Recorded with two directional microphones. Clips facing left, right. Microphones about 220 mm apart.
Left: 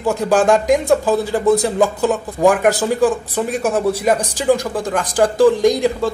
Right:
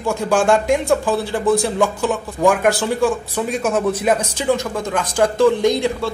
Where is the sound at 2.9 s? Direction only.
15° left (ahead or behind).